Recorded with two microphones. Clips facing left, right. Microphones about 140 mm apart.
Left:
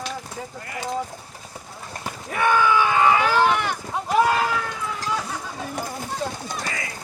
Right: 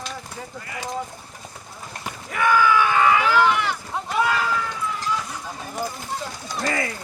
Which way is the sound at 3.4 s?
45° left (ahead or behind).